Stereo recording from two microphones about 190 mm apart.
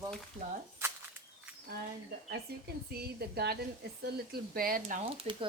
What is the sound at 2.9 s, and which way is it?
A woman's voice, 55° right (ahead or behind).